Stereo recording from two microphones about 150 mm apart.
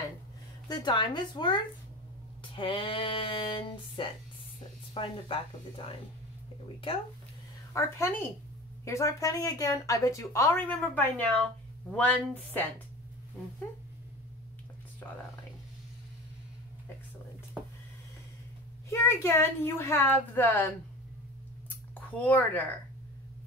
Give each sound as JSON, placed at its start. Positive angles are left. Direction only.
{"t": 0.7, "sound": "speech", "side_deg": 30}
{"t": 7.7, "sound": "a woman's voice", "side_deg": 15}
{"t": 15.0, "sound": "speech", "side_deg": 15}
{"t": 18.9, "sound": "a woman's voice", "side_deg": 20}
{"t": 21.6, "sound": "a sound", "side_deg": 10}